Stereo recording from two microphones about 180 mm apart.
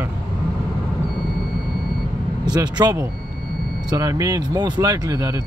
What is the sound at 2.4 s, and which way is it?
Speech, 20° right (ahead or behind).